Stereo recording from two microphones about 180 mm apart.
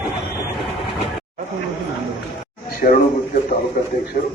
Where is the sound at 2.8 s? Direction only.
45° left (ahead or behind).